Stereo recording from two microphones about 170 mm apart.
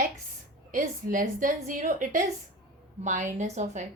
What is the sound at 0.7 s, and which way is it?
A woman's voice, 50° right (ahead or behind).